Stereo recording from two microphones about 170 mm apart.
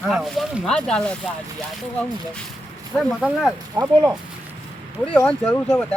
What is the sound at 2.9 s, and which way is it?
Speech, 10° left (ahead or behind).